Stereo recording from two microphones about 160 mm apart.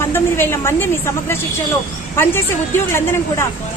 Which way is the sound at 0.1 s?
15° left (ahead or behind).